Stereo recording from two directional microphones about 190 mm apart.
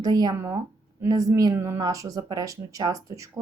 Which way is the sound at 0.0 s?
20° right (ahead or behind).